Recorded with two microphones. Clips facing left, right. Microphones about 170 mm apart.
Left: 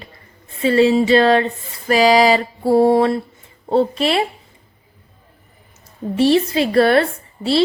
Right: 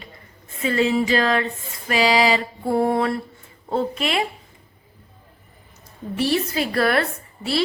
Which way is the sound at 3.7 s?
30° left (ahead or behind).